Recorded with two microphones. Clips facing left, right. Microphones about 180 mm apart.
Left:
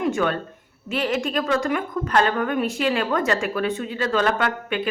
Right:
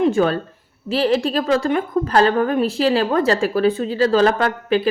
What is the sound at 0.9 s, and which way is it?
A woman's voice, 30° right (ahead or behind).